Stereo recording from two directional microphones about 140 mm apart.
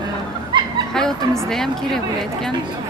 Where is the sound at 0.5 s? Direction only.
35° right (ahead or behind).